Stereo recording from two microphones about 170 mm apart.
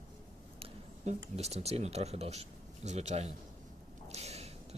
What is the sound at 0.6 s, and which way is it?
Speech, 40° right (ahead or behind).